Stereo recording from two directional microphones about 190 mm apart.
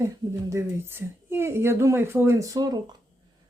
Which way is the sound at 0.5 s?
10° right (ahead or behind).